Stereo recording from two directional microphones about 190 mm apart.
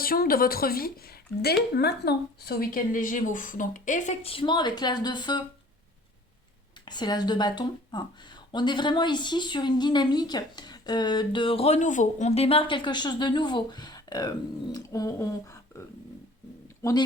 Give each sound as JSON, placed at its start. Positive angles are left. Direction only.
{"t": 0.0, "sound": "speech", "side_deg": 50}
{"t": 6.8, "sound": "speech", "side_deg": 20}